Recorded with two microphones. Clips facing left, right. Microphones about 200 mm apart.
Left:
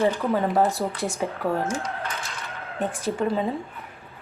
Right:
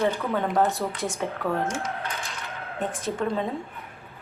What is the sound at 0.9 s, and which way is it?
Speech, 35° left (ahead or behind).